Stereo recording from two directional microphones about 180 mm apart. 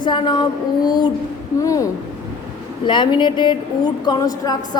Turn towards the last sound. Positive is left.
turn(degrees=20)  # may be behind; listen again after turning